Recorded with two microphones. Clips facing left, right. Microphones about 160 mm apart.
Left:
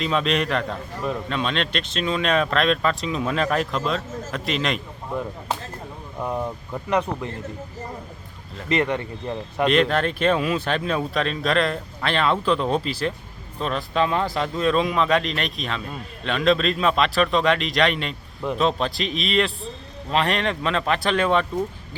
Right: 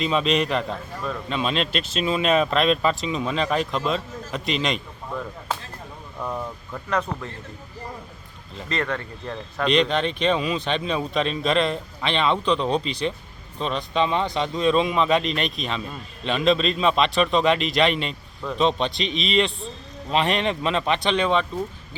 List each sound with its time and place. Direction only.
0.0 s a man's voice: centre (ahead or behind)
6.1 s speech: 15° left (ahead or behind)
8.7 s speech: 20° left (ahead or behind)
9.6 s a man's voice: 5° left (ahead or behind)